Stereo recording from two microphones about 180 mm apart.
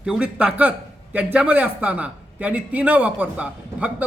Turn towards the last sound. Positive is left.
turn(degrees=-5)  # may be behind; listen again after turning